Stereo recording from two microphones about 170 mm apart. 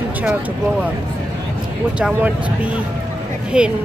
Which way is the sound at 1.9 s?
5° right (ahead or behind).